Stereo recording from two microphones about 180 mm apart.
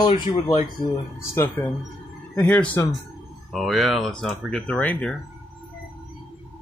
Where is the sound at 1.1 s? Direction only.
15° left (ahead or behind).